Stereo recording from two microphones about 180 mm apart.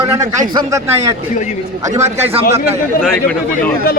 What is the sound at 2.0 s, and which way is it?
Speech, 35° right (ahead or behind).